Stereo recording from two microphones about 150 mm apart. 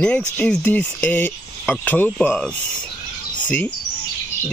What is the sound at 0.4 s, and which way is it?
Speech, 10° left (ahead or behind).